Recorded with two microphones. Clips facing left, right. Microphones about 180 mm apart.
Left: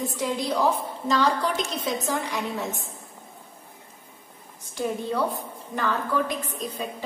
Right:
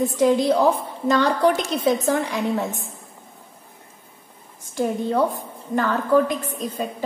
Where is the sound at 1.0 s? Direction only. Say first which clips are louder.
Right 6 dB; 60° right (ahead or behind).